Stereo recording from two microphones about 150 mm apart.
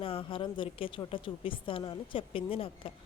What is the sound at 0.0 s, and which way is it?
A woman's voice, 35° left (ahead or behind).